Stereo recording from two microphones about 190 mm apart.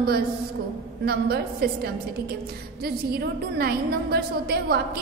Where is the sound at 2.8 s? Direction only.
55° right (ahead or behind).